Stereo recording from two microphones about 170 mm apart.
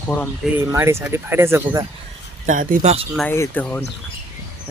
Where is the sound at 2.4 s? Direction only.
50° right (ahead or behind).